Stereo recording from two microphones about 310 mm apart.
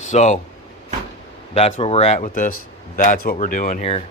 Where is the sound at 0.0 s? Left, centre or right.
Left.